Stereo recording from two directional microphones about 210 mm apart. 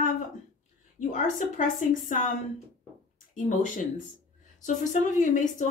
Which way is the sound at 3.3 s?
35° left (ahead or behind).